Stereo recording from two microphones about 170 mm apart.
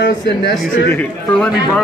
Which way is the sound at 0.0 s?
70° left (ahead or behind).